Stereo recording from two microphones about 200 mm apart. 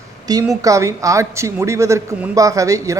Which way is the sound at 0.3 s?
20° right (ahead or behind).